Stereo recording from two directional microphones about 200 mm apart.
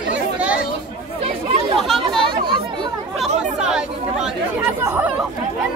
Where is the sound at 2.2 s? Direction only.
25° right (ahead or behind).